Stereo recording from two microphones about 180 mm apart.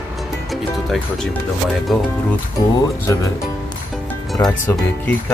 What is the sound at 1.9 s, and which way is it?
Speech, centre (ahead or behind).